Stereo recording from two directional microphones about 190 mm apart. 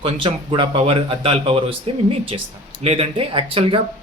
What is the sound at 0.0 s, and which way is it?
Speech, 25° right (ahead or behind).